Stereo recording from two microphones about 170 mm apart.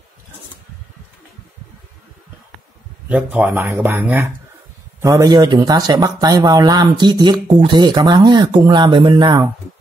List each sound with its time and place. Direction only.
3.1 s speech: 10° right (ahead or behind); by 9.5 s 25° right (ahead or behind)